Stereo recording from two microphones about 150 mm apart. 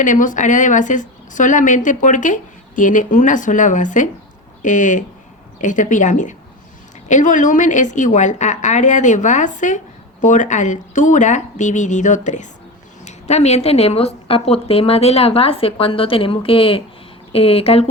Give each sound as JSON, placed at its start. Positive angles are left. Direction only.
{"t": 0.0, "sound": "a woman's voice", "side_deg": 60}